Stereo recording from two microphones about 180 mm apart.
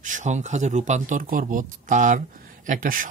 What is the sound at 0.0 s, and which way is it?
Speech, 45° right (ahead or behind).